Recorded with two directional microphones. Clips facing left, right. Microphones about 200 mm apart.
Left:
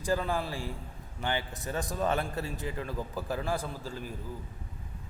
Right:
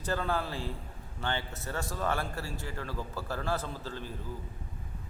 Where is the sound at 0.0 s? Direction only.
10° left (ahead or behind).